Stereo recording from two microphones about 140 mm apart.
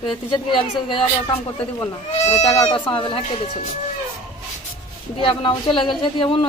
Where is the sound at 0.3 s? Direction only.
35° left (ahead or behind).